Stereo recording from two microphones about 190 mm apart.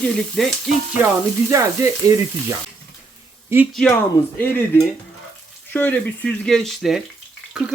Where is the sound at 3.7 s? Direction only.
10° left (ahead or behind).